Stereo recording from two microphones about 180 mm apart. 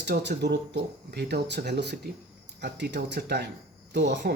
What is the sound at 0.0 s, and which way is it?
Speech, 70° right (ahead or behind).